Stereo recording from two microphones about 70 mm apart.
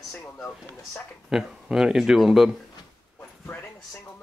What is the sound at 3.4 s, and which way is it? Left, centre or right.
Speech, left.